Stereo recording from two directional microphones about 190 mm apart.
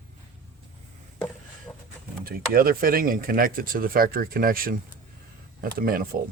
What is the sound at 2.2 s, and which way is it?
Speech, 50° right (ahead or behind).